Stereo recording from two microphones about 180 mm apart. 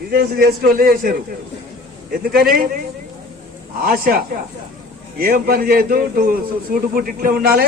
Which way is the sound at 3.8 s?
55° right (ahead or behind).